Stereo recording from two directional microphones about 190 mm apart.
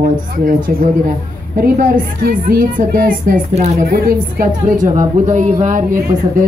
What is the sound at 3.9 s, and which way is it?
A woman's voice, 50° right (ahead or behind).